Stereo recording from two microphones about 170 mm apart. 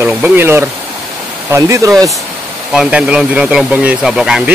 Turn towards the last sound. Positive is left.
turn(degrees=-5)  # may be behind; listen again after turning